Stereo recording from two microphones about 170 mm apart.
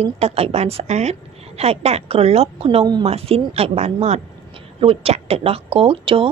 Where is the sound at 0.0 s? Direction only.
35° right (ahead or behind).